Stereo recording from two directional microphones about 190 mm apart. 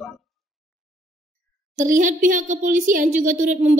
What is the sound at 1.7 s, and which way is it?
Speech, 40° right (ahead or behind).